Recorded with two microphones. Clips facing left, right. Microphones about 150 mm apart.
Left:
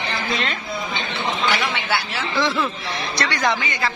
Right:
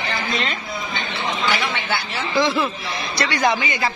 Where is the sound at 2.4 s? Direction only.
15° right (ahead or behind).